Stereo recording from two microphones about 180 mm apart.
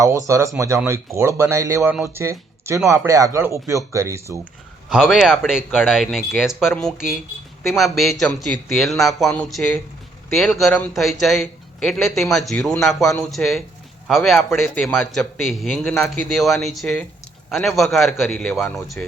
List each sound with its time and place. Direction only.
0.0 s speech: 20° right (ahead or behind)
4.9 s a man's voice: centre (ahead or behind)